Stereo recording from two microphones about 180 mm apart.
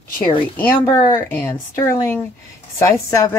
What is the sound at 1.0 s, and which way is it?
Speech, 15° left (ahead or behind).